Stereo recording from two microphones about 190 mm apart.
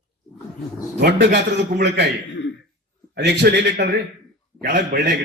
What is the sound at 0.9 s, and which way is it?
Speech, 60° right (ahead or behind).